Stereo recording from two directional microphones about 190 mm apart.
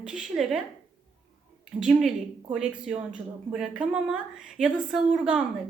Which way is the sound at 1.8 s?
Centre (ahead or behind).